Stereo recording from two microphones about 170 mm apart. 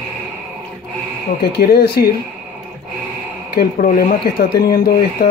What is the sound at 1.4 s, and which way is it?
Speech, 70° left (ahead or behind).